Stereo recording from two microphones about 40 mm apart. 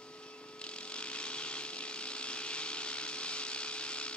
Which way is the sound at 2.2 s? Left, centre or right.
Left.